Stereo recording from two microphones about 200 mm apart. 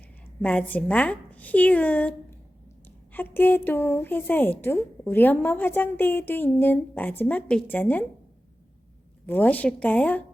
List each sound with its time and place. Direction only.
0.4 s a woman's voice: 5° left (ahead or behind)
9.2 s a woman's voice: 10° left (ahead or behind)